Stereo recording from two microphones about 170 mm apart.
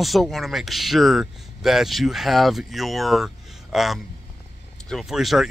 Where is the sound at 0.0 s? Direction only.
Centre (ahead or behind).